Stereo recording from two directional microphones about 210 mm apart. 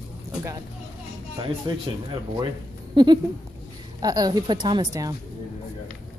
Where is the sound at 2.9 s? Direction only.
20° right (ahead or behind).